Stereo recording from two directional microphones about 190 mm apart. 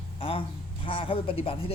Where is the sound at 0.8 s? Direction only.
25° left (ahead or behind).